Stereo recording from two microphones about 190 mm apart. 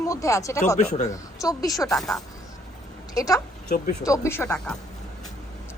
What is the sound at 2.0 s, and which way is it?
Speech, centre (ahead or behind).